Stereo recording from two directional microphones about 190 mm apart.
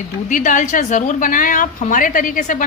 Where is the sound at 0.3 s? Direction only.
40° left (ahead or behind).